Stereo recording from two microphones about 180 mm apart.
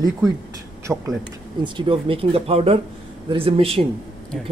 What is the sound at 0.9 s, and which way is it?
Speech, 10° right (ahead or behind).